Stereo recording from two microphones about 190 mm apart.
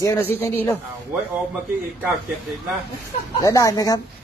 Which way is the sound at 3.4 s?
20° left (ahead or behind).